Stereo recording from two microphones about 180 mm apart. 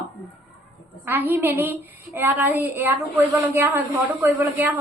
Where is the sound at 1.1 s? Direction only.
10° right (ahead or behind).